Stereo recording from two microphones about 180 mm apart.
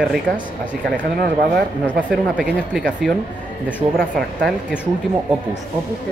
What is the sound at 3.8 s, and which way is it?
Speech, 25° right (ahead or behind).